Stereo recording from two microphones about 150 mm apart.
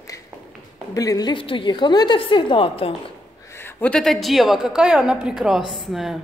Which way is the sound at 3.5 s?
15° left (ahead or behind).